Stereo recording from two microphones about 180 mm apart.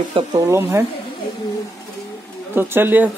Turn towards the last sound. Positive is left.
turn(degrees=-10)  # may be behind; listen again after turning